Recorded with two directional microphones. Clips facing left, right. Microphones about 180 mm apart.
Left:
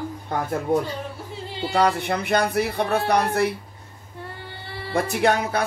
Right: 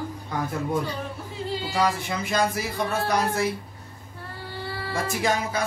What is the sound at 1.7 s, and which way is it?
Speech, 60° left (ahead or behind).